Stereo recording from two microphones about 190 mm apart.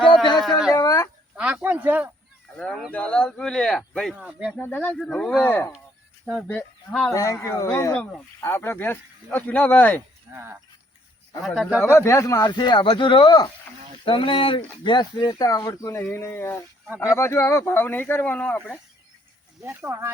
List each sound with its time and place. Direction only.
0.3 s a sound: centre (ahead or behind)
0.7 s a sound: 20° left (ahead or behind)
1.4 s a sound: 5° right (ahead or behind)
2.6 s speech: 5° left (ahead or behind)
4.6 s speech: 10° left (ahead or behind)
6.2 s cattle: 5° left (ahead or behind)
7.1 s speech: 15° left (ahead or behind)
10.3 s speech: 10° right (ahead or behind)
11.4 s speech: centre (ahead or behind)
11.9 s speech: 15° left (ahead or behind)
19.6 s speech: 15° right (ahead or behind)